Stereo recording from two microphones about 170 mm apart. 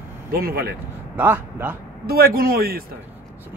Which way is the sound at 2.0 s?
60° right (ahead or behind).